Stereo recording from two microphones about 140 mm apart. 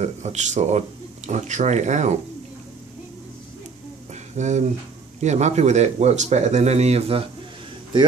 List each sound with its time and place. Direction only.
0.0 s speech: 55° right (ahead or behind)
4.1 s a sound: 55° right (ahead or behind)
5.2 s speech: 55° right (ahead or behind)